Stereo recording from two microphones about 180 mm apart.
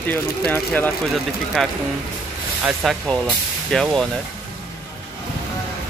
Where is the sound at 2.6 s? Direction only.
Centre (ahead or behind).